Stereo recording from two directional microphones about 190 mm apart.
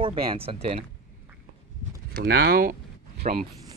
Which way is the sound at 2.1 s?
55° right (ahead or behind).